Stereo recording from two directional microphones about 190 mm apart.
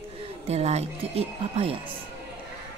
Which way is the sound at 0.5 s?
35° right (ahead or behind).